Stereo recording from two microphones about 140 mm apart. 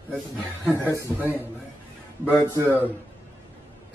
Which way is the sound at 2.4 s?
20° right (ahead or behind).